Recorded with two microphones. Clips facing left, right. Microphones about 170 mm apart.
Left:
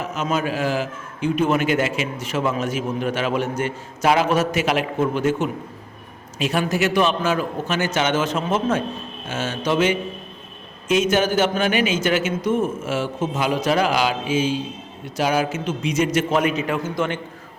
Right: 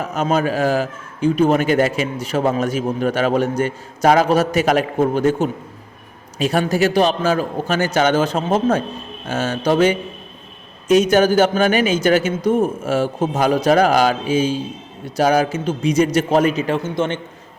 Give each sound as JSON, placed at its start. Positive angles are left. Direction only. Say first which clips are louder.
{"t": 0.0, "sound": "a man's voice", "louder": "right 5 dB", "side_deg": -40}